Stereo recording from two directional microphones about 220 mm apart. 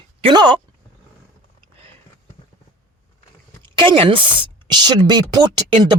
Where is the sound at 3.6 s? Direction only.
20° right (ahead or behind).